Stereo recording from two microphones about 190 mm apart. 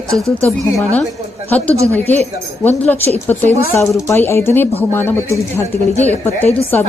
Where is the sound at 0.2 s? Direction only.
15° right (ahead or behind).